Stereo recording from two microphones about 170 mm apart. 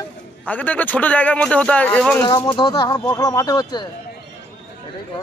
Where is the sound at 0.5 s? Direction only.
10° left (ahead or behind).